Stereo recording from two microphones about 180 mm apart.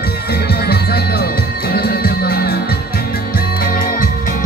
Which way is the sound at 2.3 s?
60° left (ahead or behind).